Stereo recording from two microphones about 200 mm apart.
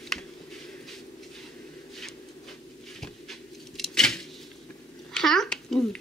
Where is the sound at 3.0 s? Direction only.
Centre (ahead or behind).